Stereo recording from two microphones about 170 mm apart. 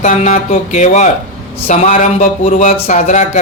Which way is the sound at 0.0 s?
45° left (ahead or behind).